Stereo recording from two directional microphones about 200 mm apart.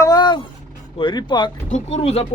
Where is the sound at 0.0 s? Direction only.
20° left (ahead or behind).